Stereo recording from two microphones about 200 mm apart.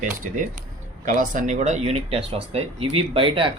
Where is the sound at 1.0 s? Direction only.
40° right (ahead or behind).